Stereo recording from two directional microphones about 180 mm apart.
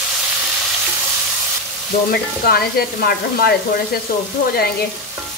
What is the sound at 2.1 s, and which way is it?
A woman's voice, 55° left (ahead or behind).